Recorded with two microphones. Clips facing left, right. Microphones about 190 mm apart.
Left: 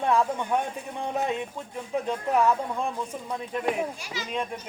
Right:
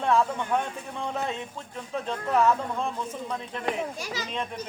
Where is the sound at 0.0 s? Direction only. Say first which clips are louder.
Even; 15° left (ahead or behind).